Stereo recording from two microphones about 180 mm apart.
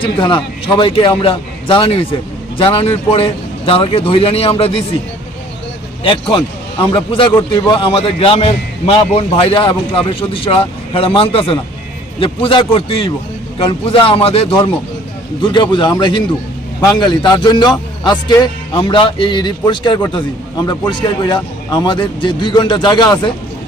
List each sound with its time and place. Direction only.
0.0 s a man's voice: 25° left (ahead or behind)
6.0 s a man's voice: 30° left (ahead or behind)